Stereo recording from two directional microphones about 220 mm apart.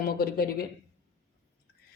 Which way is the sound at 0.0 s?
45° left (ahead or behind).